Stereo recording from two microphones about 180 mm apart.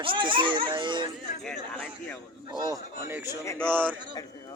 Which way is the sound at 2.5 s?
20° right (ahead or behind).